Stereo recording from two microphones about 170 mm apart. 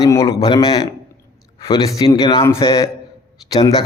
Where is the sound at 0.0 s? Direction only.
20° left (ahead or behind).